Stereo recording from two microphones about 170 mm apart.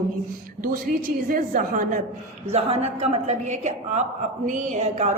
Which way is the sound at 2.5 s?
40° right (ahead or behind).